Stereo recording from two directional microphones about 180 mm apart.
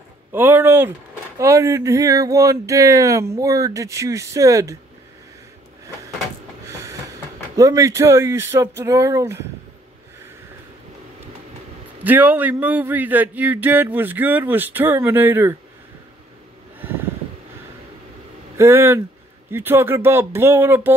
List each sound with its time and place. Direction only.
0.3 s a man's voice: 10° right (ahead or behind)
7.5 s a man's voice: 20° right (ahead or behind)
12.0 s a man's voice: 10° right (ahead or behind)
16.8 s vehicle: 10° right (ahead or behind)
18.6 s a man's voice: 15° right (ahead or behind)